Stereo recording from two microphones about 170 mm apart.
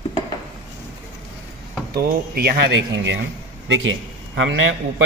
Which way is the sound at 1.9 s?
60° right (ahead or behind).